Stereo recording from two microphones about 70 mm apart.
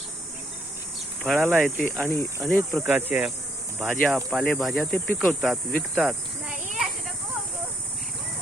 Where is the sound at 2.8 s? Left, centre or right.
Right.